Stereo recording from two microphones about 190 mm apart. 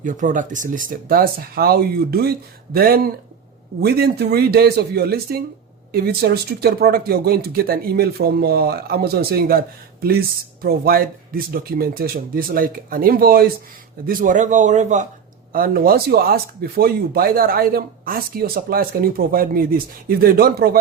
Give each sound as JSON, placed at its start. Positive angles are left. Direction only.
{"t": 0.0, "sound": "a man's voice", "side_deg": -45}
{"t": 15.5, "sound": "speech", "side_deg": -50}